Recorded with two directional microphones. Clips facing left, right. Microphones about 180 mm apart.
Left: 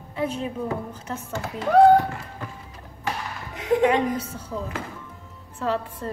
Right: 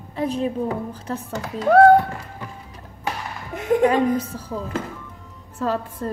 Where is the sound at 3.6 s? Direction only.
40° right (ahead or behind).